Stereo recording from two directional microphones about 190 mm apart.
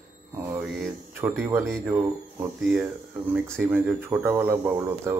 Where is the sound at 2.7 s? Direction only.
5° right (ahead or behind).